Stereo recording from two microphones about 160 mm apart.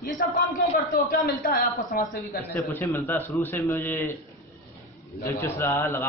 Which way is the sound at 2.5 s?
15° left (ahead or behind).